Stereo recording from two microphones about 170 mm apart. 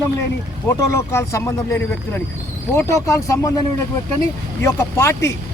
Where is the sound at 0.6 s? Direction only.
15° left (ahead or behind).